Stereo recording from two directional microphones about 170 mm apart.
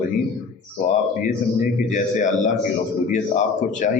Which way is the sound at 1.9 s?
45° left (ahead or behind).